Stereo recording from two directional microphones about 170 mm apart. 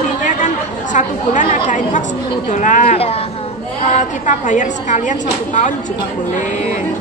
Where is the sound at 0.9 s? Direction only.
45° left (ahead or behind).